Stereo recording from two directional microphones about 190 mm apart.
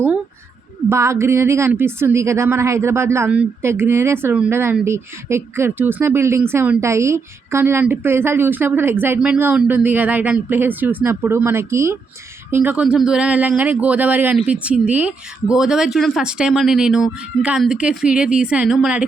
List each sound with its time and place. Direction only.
0.9 s a woman's voice: 15° right (ahead or behind)